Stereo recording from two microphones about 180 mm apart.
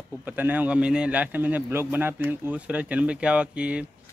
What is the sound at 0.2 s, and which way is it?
A man's voice, 10° right (ahead or behind).